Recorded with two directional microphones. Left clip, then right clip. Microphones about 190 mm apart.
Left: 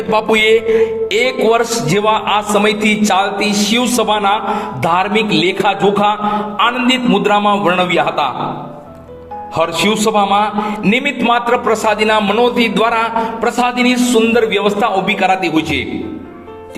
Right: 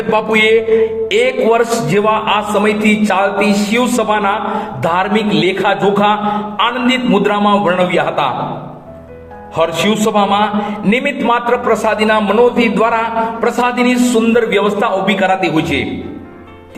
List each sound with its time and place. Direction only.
0.1 s a man's voice: 50° left (ahead or behind)
9.8 s a man's voice: 40° left (ahead or behind)